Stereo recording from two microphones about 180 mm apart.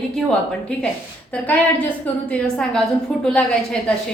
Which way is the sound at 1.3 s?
10° left (ahead or behind).